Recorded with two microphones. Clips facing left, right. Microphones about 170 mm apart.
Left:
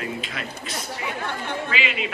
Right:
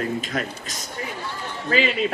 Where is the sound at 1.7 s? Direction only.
40° right (ahead or behind).